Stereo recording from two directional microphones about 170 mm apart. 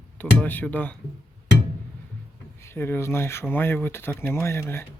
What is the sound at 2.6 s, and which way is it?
Speech, 15° left (ahead or behind).